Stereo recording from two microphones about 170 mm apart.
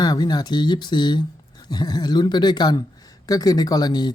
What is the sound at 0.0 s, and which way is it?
Speech, 25° left (ahead or behind).